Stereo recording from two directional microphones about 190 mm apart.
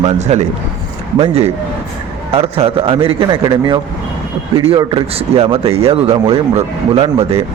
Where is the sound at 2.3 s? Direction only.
30° right (ahead or behind).